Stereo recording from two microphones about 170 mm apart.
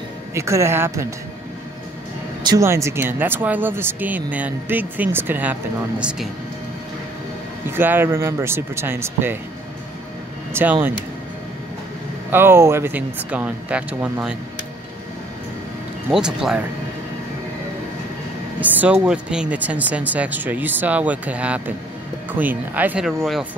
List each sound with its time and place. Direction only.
0.3 s speech: 15° right (ahead or behind)
2.4 s speech: 20° right (ahead or behind)
7.6 s speech: 10° right (ahead or behind)
10.5 s speech: 10° right (ahead or behind)
12.3 s speech: 15° right (ahead or behind)
16.1 s speech: 5° right (ahead or behind)
18.6 s speech: 10° right (ahead or behind)